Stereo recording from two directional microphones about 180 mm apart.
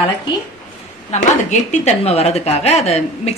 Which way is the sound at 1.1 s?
40° left (ahead or behind).